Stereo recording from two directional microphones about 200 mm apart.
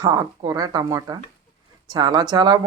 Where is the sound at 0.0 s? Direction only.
20° right (ahead or behind).